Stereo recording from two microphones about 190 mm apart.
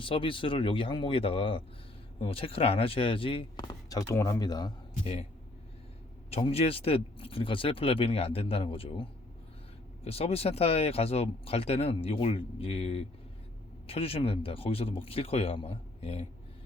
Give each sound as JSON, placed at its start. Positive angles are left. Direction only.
{"t": 0.0, "sound": "speech", "side_deg": 25}
{"t": 6.3, "sound": "speech", "side_deg": 30}